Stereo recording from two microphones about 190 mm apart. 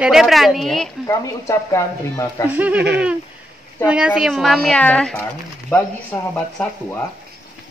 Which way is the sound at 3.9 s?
5° right (ahead or behind).